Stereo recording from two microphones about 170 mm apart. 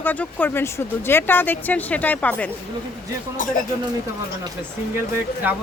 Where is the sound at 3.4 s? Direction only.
50° left (ahead or behind).